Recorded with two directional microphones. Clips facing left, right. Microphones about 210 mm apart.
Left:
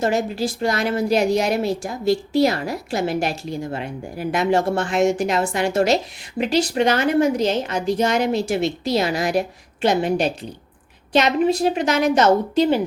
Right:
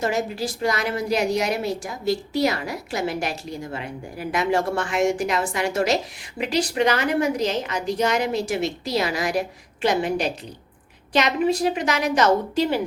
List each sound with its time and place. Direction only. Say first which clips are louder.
0.0 s a woman's voice: left 3 dB; 25° left (ahead or behind)
2.0 s a woman's voice: left 4 dB; 30° left (ahead or behind)